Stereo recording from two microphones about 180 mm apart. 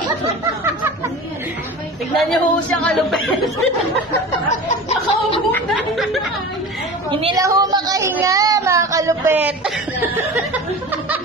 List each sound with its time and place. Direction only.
2.1 s speech: 5° left (ahead or behind)
4.5 s snicker: 35° left (ahead or behind)
7.3 s speech: 20° right (ahead or behind)
10.3 s a sound: 10° right (ahead or behind)